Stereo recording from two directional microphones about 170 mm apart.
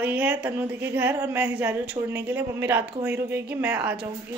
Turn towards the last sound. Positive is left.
turn(degrees=-5)  # may be behind; listen again after turning